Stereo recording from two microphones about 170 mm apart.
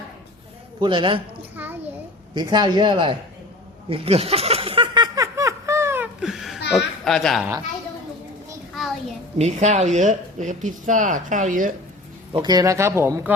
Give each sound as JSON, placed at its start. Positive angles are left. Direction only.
{"t": 0.8, "sound": "speech", "side_deg": -30}
{"t": 1.5, "sound": "a sound", "side_deg": -10}
{"t": 2.3, "sound": "speech", "side_deg": -25}
{"t": 3.8, "sound": "a sound", "side_deg": -35}
{"t": 5.1, "sound": "laughter", "side_deg": -20}
{"t": 6.7, "sound": "speech", "side_deg": 0}
{"t": 9.4, "sound": "speech", "side_deg": -45}
{"t": 12.3, "sound": "speech", "side_deg": -25}